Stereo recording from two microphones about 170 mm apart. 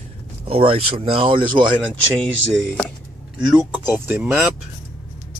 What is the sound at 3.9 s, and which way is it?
Speech, 10° right (ahead or behind).